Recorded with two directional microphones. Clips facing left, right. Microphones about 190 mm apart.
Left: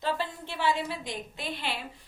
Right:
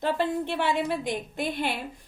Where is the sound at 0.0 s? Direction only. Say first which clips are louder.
Right 6 dB; 60° right (ahead or behind).